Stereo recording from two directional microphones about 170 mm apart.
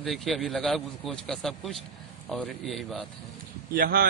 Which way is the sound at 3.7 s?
60° right (ahead or behind).